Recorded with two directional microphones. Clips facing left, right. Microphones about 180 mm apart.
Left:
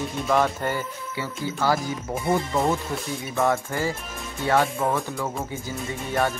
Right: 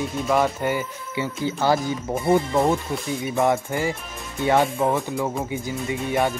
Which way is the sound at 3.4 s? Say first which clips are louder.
Right 2 dB; 20° right (ahead or behind).